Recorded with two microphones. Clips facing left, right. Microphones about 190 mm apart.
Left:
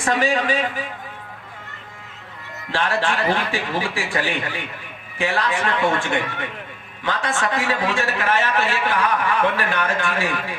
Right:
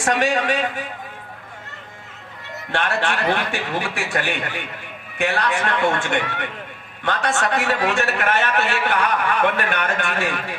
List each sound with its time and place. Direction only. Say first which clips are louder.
0.1 s a man's voice: even; 70° right (ahead or behind)
2.7 s a man's voice: left 1 dB; 70° right (ahead or behind)